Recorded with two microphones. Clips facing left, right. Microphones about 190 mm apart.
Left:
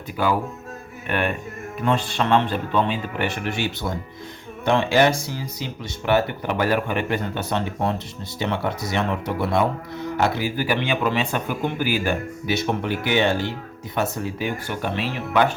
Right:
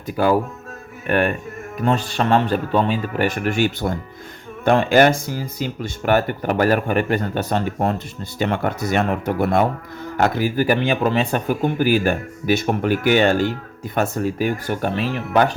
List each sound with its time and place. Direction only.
1.0 s speech: 45° right (ahead or behind)